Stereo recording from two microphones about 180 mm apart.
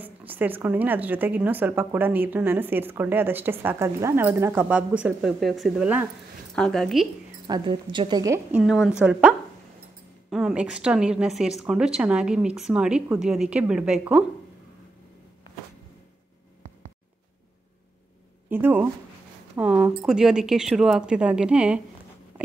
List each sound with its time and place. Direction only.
0.0 s a woman's voice: 10° right (ahead or behind)
7.4 s a woman's voice: 25° right (ahead or behind); by 9.3 s 5° right (ahead or behind)
10.3 s a woman's voice: 5° right (ahead or behind)
18.5 s a woman's voice: 10° right (ahead or behind)